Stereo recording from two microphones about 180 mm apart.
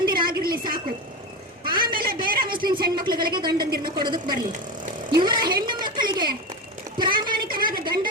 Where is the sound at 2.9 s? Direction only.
25° right (ahead or behind).